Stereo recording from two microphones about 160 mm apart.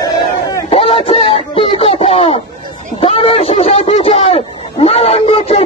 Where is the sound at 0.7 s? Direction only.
35° left (ahead or behind).